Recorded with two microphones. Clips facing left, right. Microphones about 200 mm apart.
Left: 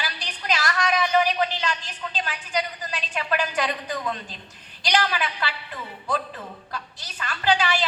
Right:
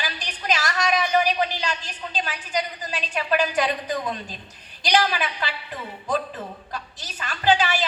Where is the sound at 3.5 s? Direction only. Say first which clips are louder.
Right 3 dB; 15° right (ahead or behind).